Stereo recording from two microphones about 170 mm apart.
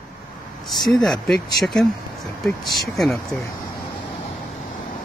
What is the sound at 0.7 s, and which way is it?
Speech, centre (ahead or behind).